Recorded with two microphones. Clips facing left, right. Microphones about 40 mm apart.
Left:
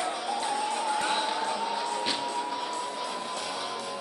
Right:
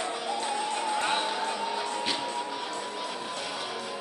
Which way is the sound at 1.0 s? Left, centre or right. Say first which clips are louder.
Even; right.